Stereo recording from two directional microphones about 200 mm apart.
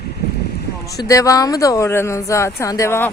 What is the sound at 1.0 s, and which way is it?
Speech, 15° left (ahead or behind).